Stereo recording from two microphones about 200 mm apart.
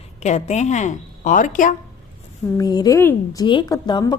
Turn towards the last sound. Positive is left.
turn(degrees=20)  # may be behind; listen again after turning